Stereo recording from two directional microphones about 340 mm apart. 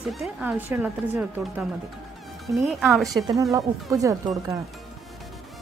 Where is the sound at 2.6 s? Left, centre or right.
Centre.